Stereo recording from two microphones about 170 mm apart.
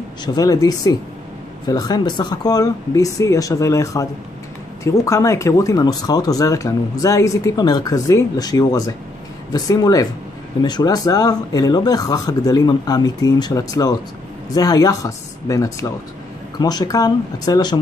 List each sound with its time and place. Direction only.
0.2 s speech: 25° left (ahead or behind)